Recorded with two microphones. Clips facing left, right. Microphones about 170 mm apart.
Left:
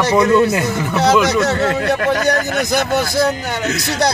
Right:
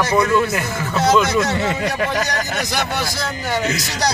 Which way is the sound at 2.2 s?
50° left (ahead or behind).